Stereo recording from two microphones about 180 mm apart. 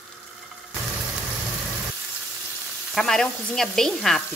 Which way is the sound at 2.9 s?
Centre (ahead or behind).